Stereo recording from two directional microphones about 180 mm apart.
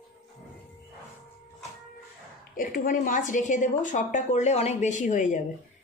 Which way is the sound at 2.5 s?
50° left (ahead or behind).